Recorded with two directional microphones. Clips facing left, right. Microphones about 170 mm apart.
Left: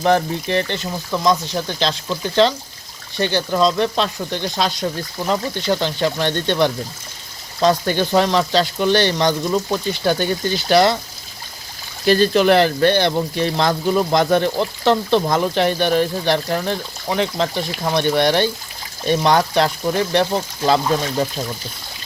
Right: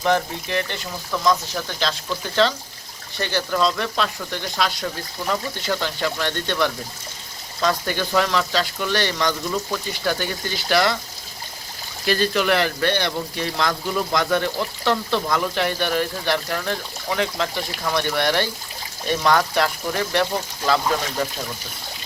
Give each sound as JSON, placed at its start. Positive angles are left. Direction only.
{"t": 0.0, "sound": "speech", "side_deg": 35}
{"t": 12.0, "sound": "speech", "side_deg": 30}